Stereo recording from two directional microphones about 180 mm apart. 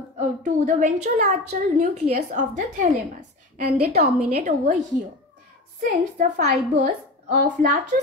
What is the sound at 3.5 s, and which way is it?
Speech, 60° right (ahead or behind).